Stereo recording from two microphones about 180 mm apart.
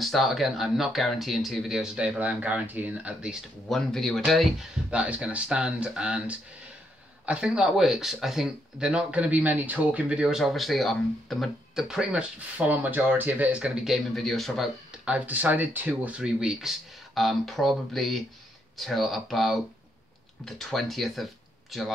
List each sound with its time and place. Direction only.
0.0 s speech: centre (ahead or behind)